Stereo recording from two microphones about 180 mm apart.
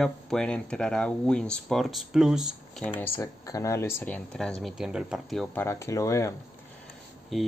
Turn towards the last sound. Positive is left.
turn(degrees=0)  # may be behind; listen again after turning